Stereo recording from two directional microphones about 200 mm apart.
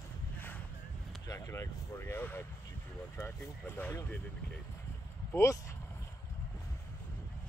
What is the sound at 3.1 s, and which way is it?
Speech, 10° left (ahead or behind).